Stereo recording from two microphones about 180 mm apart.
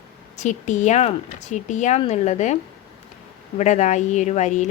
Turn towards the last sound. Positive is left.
turn(degrees=40)  # may be behind; listen again after turning